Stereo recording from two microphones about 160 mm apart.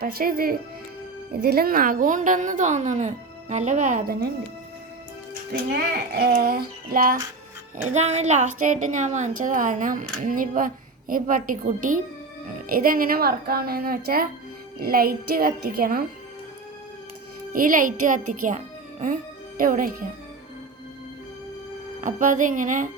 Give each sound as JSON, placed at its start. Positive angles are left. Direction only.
{"t": 0.0, "sound": "a woman's voice", "side_deg": -70}
{"t": 5.3, "sound": "music", "side_deg": -70}
{"t": 6.1, "sound": "speech", "side_deg": -80}
{"t": 7.9, "sound": "a woman's voice", "side_deg": -45}
{"t": 17.5, "sound": "a child's voice", "side_deg": -60}
{"t": 22.0, "sound": "a woman's voice", "side_deg": -55}